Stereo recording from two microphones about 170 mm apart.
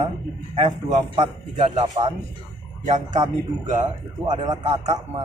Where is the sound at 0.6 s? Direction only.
40° right (ahead or behind).